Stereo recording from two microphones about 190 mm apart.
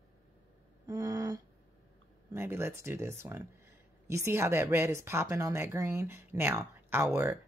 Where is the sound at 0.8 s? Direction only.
15° right (ahead or behind).